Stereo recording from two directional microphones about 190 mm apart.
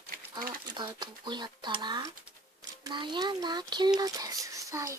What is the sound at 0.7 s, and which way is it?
A child's voice, 25° right (ahead or behind).